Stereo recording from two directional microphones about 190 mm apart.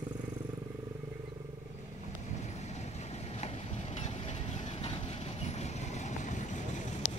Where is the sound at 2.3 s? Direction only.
35° left (ahead or behind).